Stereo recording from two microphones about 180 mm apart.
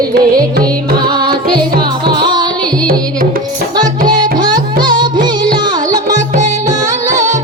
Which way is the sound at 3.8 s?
25° right (ahead or behind).